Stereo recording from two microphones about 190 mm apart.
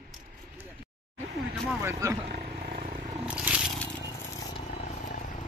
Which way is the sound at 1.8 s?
15° right (ahead or behind).